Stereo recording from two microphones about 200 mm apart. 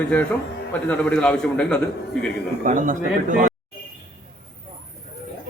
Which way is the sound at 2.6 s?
40° right (ahead or behind).